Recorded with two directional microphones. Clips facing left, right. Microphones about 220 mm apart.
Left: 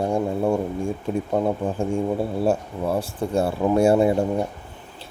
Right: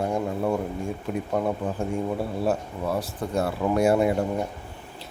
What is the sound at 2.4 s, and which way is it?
Speech, 30° left (ahead or behind).